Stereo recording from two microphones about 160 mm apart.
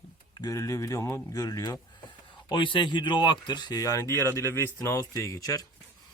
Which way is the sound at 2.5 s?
30° left (ahead or behind).